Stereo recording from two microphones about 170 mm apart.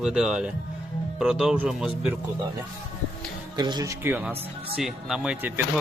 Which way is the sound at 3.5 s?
25° right (ahead or behind).